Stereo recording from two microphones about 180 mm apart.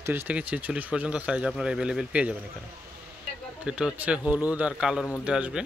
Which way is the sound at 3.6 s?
5° right (ahead or behind).